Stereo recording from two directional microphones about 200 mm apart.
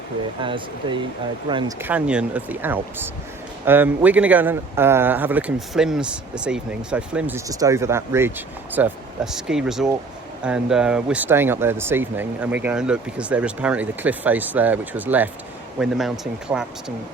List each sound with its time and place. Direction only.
0.4 s speech: 25° right (ahead or behind)
1.8 s a man's voice: 5° right (ahead or behind)